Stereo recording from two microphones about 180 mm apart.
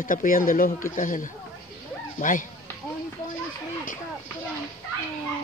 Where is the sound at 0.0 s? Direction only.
50° left (ahead or behind).